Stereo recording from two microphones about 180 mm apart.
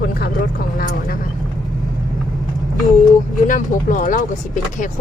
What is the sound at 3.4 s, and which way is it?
Speech, 45° left (ahead or behind).